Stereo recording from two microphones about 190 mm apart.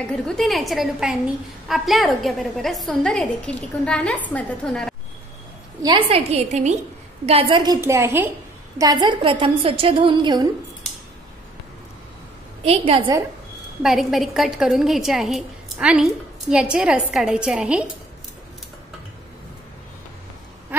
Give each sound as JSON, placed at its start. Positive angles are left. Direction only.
{"t": 0.2, "sound": "a woman's voice", "side_deg": 0}
{"t": 5.8, "sound": "a woman's voice", "side_deg": -25}
{"t": 12.6, "sound": "a woman's voice", "side_deg": -30}
{"t": 13.8, "sound": "a woman's voice", "side_deg": 0}